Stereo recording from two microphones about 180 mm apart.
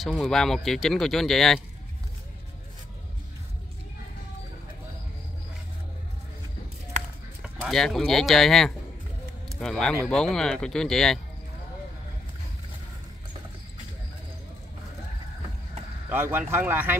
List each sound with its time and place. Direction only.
0.0 s speech: centre (ahead or behind)
7.4 s speech: centre (ahead or behind)
16.1 s speech: 10° right (ahead or behind)